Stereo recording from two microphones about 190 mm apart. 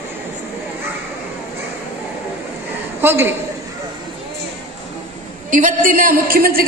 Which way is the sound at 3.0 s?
10° right (ahead or behind).